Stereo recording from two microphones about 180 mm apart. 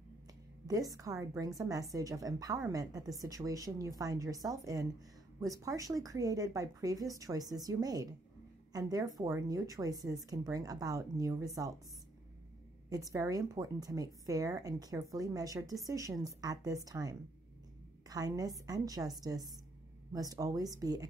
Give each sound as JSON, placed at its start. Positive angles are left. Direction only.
{"t": 0.7, "sound": "a woman's voice", "side_deg": -20}
{"t": 12.9, "sound": "a woman's voice", "side_deg": -20}